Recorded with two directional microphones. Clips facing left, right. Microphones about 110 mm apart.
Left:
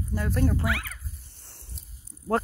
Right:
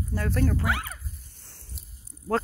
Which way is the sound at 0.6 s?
30° right (ahead or behind).